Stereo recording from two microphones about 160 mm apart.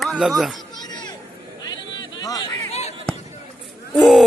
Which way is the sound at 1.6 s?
25° left (ahead or behind).